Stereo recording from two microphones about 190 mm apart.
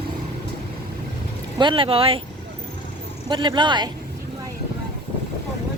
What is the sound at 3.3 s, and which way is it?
Speech, 25° right (ahead or behind).